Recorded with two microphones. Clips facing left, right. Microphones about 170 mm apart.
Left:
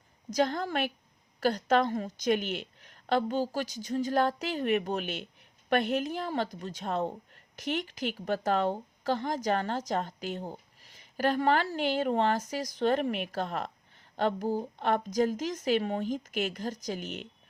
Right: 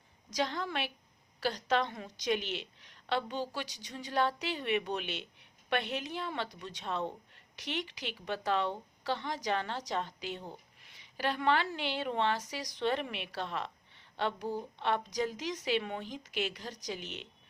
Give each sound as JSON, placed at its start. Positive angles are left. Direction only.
{"t": 0.3, "sound": "a woman's voice", "side_deg": 45}